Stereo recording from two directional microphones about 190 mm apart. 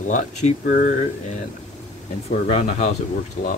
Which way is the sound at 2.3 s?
35° left (ahead or behind).